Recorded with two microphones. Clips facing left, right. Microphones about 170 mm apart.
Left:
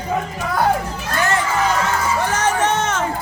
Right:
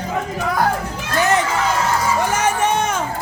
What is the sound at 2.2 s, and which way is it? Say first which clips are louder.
Music: even; 10° right (ahead or behind).